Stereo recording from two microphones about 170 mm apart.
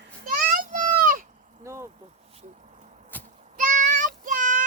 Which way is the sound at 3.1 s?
10° left (ahead or behind).